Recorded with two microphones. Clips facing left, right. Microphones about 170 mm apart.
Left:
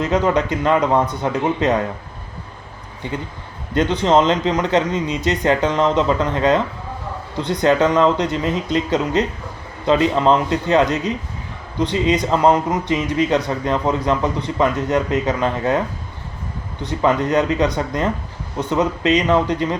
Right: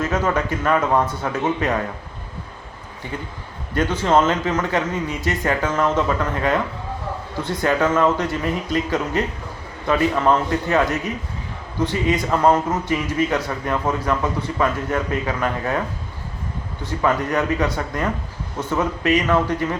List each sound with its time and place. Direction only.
0.0 s a man's voice: 20° left (ahead or behind)
3.0 s a man's voice: 20° left (ahead or behind)
16.8 s a man's voice: 25° left (ahead or behind)